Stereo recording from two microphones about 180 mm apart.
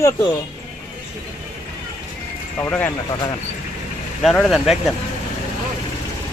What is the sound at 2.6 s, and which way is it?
Speech, 10° left (ahead or behind).